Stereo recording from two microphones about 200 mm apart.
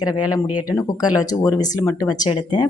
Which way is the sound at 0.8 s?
20° left (ahead or behind).